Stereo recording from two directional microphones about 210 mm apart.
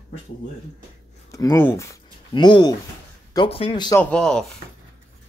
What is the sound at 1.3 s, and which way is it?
Speech, 15° left (ahead or behind).